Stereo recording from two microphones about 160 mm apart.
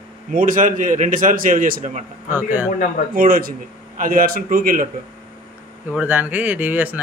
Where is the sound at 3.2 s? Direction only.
65° right (ahead or behind).